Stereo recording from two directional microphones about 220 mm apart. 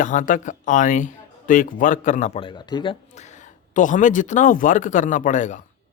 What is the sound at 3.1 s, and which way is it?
Speech, 30° left (ahead or behind).